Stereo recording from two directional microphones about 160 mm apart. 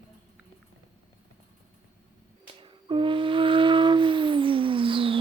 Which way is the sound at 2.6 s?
30° right (ahead or behind).